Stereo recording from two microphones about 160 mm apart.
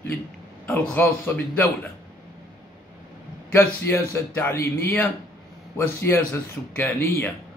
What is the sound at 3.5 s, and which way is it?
Speech, 15° left (ahead or behind).